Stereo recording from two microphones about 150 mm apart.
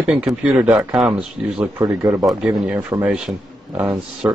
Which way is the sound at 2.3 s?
5° right (ahead or behind).